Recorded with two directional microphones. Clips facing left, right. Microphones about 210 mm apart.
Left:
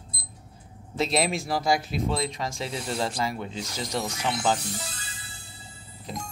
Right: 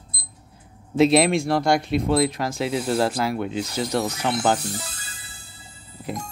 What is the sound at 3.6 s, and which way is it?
Speech, 65° right (ahead or behind).